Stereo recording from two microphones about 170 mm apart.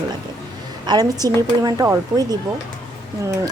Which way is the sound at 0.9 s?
25° right (ahead or behind).